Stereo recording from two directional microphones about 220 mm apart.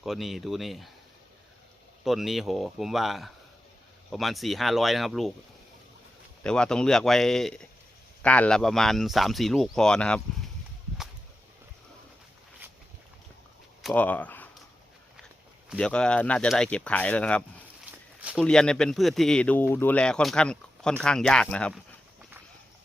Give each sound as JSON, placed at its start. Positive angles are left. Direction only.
{"t": 0.0, "sound": "speech", "side_deg": 0}
{"t": 2.0, "sound": "speech", "side_deg": 0}
{"t": 6.4, "sound": "speech", "side_deg": 5}
{"t": 13.8, "sound": "speech", "side_deg": 5}
{"t": 15.7, "sound": "speech", "side_deg": 5}
{"t": 18.2, "sound": "a sound", "side_deg": -5}
{"t": 18.4, "sound": "speech", "side_deg": 5}